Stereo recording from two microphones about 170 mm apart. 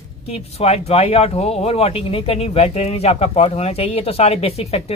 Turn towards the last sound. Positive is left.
turn(degrees=35)  # may be behind; listen again after turning